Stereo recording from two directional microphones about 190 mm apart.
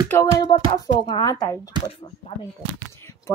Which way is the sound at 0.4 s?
20° left (ahead or behind).